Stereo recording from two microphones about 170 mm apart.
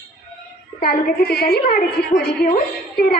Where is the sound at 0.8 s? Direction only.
65° left (ahead or behind).